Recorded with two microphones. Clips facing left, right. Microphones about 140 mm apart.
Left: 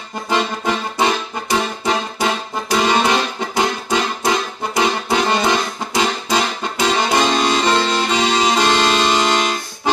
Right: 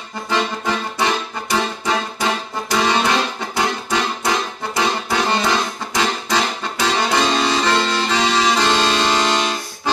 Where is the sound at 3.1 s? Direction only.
20° left (ahead or behind).